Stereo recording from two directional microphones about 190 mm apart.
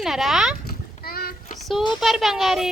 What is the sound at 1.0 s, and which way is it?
Child singing, 55° left (ahead or behind).